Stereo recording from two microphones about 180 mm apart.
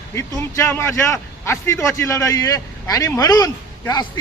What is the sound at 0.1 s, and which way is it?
A man's voice, 15° left (ahead or behind).